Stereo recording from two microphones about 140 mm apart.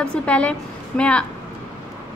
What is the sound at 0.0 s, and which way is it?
A woman's voice, 10° left (ahead or behind).